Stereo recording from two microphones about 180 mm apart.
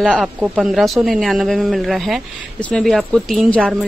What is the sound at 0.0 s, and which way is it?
Speech, centre (ahead or behind).